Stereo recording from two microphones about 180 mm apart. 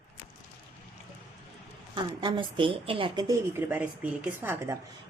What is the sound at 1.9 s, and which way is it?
A woman's voice, 25° right (ahead or behind).